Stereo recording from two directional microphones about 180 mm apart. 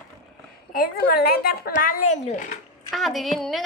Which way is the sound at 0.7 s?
55° left (ahead or behind).